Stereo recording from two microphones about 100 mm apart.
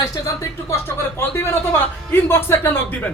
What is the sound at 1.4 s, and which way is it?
Speech, 25° left (ahead or behind).